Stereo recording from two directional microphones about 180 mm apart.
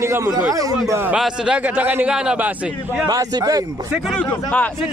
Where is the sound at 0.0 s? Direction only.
15° right (ahead or behind).